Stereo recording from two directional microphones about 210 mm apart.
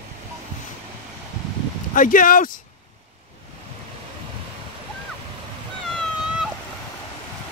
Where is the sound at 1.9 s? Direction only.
40° left (ahead or behind).